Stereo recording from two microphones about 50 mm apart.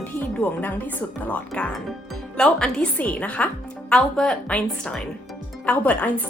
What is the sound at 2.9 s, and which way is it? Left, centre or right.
Speech, left.